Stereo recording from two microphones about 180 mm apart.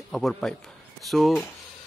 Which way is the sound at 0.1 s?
Centre (ahead or behind).